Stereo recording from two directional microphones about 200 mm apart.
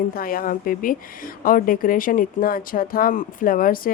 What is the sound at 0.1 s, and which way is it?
Speech, 45° left (ahead or behind).